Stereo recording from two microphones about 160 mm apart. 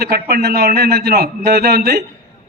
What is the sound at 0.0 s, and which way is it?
A man's voice, 75° right (ahead or behind).